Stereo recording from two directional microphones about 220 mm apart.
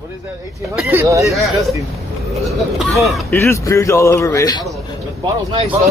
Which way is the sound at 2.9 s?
Centre (ahead or behind).